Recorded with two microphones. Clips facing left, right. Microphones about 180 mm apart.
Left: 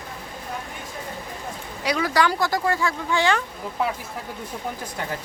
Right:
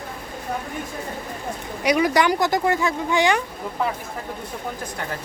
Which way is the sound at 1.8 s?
20° right (ahead or behind).